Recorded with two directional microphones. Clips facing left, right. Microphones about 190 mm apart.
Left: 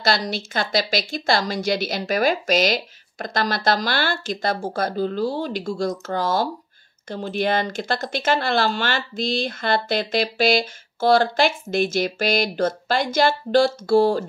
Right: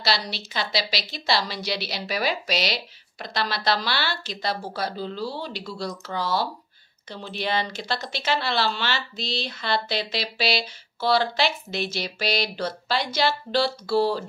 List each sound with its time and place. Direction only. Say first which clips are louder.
0.0 s speech: left 5 dB; 50° left (ahead or behind)